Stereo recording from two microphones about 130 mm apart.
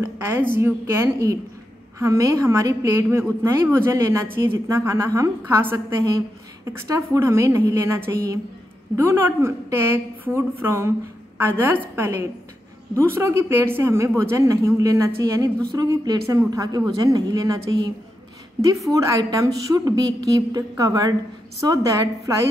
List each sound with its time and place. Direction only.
0.0 s a woman's voice: 15° right (ahead or behind)